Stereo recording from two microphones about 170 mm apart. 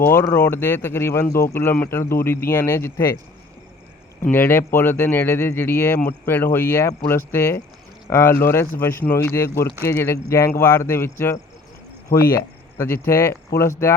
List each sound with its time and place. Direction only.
0.0 s speech: 10° left (ahead or behind)
4.2 s speech: 10° left (ahead or behind)
12.4 s speech: 15° left (ahead or behind)